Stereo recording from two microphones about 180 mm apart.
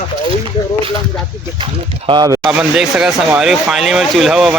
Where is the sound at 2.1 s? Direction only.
25° right (ahead or behind).